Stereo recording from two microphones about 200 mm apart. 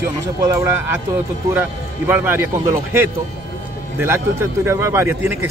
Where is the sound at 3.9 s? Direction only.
15° right (ahead or behind).